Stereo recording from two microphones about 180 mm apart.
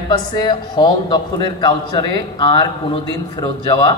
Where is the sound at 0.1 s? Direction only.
25° left (ahead or behind).